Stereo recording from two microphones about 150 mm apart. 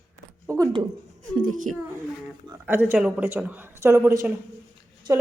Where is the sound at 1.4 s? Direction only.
60° right (ahead or behind).